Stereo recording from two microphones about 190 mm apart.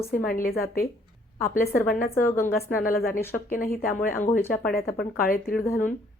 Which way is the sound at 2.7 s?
50° left (ahead or behind).